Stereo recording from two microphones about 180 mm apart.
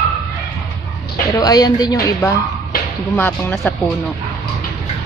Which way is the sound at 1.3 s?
20° left (ahead or behind).